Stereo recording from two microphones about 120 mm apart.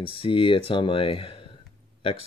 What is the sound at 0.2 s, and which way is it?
Speech, 45° left (ahead or behind).